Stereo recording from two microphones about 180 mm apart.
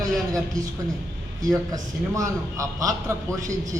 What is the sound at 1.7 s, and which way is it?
A man's voice, 20° right (ahead or behind).